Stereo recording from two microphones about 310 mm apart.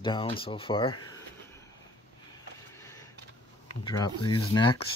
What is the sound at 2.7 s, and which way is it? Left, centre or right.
Printer, centre.